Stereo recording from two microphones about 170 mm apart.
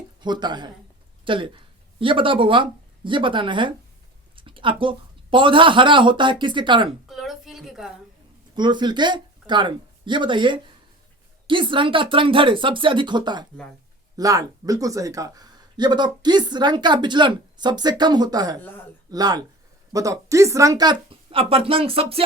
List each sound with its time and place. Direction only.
0.2 s speech: 25° right (ahead or behind)
7.1 s a sound: centre (ahead or behind)
8.5 s speech: 25° right (ahead or behind)